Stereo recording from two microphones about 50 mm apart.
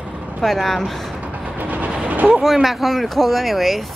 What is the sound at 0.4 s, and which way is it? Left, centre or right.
Speech, centre.